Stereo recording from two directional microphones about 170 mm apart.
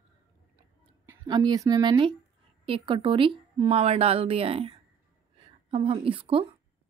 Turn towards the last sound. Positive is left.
turn(degrees=-30)  # may be behind; listen again after turning